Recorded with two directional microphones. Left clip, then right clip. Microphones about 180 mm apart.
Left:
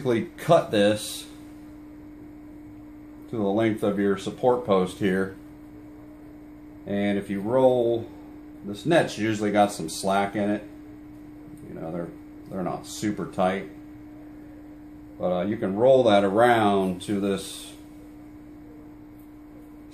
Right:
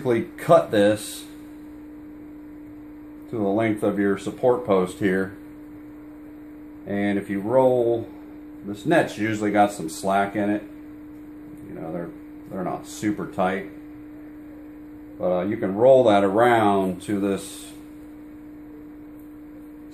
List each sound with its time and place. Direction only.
0.0 s speech: 20° right (ahead or behind)
3.3 s speech: 20° right (ahead or behind)
6.9 s speech: 20° right (ahead or behind)
8.8 s speech: 10° right (ahead or behind)
12.6 s speech: 10° right (ahead or behind)
15.1 s speech: 20° right (ahead or behind)